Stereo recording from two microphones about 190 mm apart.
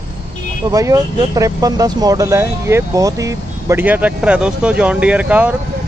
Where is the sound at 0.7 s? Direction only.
20° right (ahead or behind).